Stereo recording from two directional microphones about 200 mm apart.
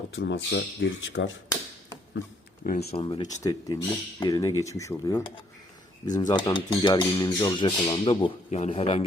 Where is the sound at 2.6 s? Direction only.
30° left (ahead or behind).